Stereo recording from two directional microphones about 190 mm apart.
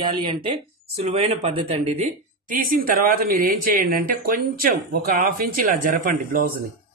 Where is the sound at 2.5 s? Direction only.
45° right (ahead or behind).